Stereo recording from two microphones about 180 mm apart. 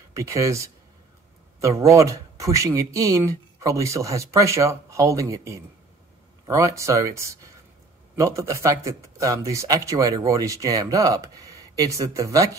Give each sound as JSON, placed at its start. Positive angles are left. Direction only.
{"t": 0.1, "sound": "speech", "side_deg": -15}